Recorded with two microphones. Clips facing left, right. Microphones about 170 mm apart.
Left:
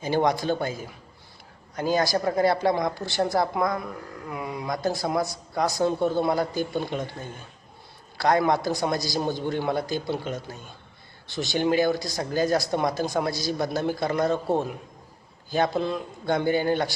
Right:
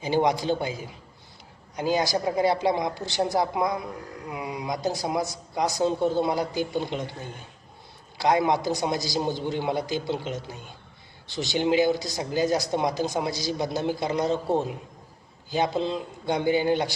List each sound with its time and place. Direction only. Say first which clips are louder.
0.0 s a man's voice: even; 15° right (ahead or behind)
1.7 s a man's voice: left 1 dB; 15° right (ahead or behind)
8.2 s a man's voice: left 1 dB; 15° right (ahead or behind)